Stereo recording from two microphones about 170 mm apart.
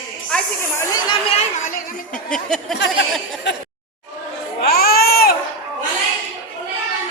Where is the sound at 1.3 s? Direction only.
50° left (ahead or behind).